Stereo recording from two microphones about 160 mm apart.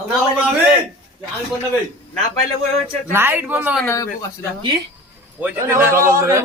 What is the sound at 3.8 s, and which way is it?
Speech, 20° left (ahead or behind).